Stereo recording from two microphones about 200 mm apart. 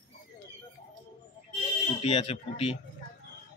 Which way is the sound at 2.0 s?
30° left (ahead or behind).